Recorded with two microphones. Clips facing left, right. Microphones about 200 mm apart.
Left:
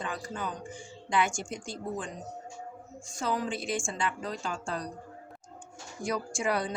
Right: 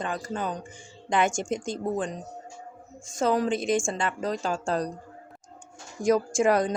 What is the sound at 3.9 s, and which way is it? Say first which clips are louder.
A woman's voice: right 5 dB; 45° right (ahead or behind).